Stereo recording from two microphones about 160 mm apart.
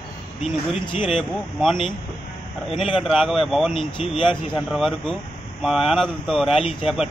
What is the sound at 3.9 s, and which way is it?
Speech, 35° left (ahead or behind).